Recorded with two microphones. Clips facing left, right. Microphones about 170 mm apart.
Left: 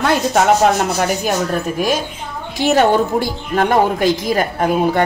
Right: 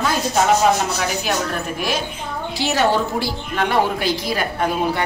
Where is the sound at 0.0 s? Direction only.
65° left (ahead or behind).